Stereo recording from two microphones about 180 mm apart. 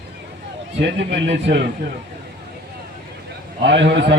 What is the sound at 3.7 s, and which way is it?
Speech, 80° right.